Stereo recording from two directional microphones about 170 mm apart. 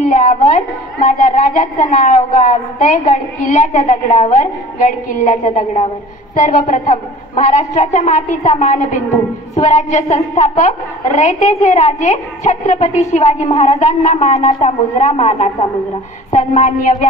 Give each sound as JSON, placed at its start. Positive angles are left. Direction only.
{"t": 0.0, "sound": "a woman's voice", "side_deg": 45}